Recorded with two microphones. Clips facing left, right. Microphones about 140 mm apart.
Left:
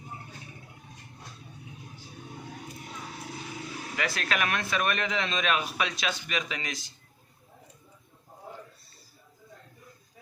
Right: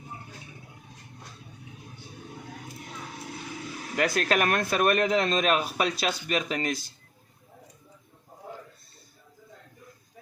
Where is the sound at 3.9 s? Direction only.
45° right (ahead or behind).